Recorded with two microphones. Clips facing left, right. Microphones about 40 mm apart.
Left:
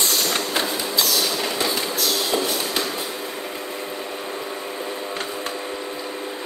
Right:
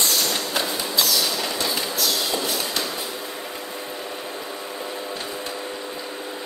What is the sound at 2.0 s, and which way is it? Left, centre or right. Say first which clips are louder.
Train: left 3 dB; left.